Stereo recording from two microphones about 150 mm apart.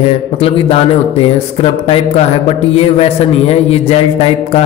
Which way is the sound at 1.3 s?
40° left (ahead or behind).